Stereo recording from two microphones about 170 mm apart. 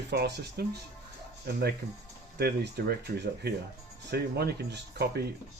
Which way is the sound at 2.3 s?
75° right (ahead or behind).